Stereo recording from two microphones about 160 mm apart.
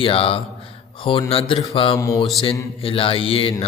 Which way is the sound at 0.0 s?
35° left (ahead or behind).